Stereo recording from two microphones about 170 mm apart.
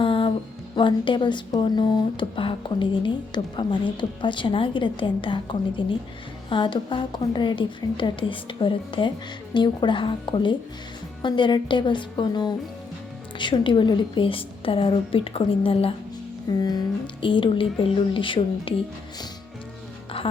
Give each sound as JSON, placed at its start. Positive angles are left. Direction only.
{"t": 0.0, "sound": "music", "side_deg": 30}
{"t": 0.8, "sound": "a woman's voice", "side_deg": 30}